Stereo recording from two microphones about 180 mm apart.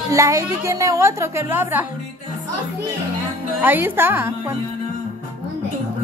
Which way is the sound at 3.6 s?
10° right (ahead or behind).